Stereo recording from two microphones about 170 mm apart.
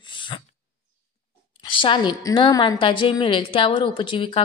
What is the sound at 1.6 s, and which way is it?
A woman's voice, 30° left (ahead or behind).